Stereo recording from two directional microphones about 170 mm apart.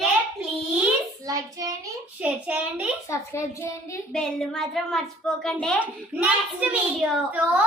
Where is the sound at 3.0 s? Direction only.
15° left (ahead or behind).